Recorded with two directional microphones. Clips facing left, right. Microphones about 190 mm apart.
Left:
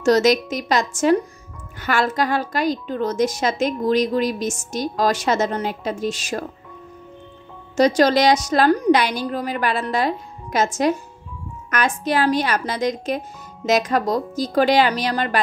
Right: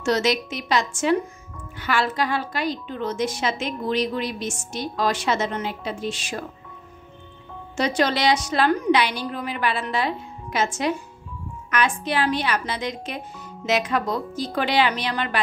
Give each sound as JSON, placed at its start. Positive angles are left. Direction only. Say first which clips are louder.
{"t": 0.0, "sound": "a woman's voice", "louder": "left 6 dB", "side_deg": 40}
{"t": 7.7, "sound": "a woman's voice", "louder": "left 7 dB", "side_deg": 40}